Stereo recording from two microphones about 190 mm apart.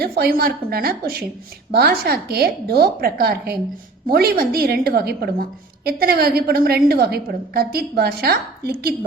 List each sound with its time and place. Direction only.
0.0 s a woman's voice: 55° right (ahead or behind)